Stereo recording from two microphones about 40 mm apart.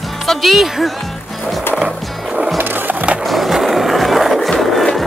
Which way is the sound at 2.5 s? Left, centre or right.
Right.